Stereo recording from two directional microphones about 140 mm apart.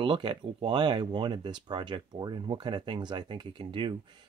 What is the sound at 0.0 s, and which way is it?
Speech, 35° right (ahead or behind).